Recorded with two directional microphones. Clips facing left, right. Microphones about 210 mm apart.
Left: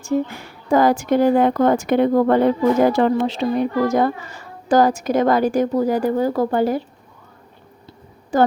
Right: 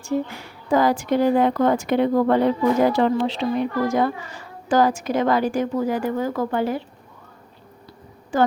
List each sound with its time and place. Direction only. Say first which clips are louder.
0.7 s a woman's voice: left 3 dB; 45° left (ahead or behind)
8.3 s a woman's voice: left 3 dB; 40° left (ahead or behind)